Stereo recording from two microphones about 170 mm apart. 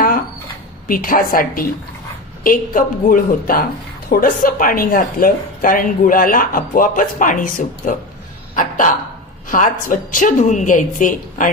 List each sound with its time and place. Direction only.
0.8 s a woman's voice: 55° left (ahead or behind)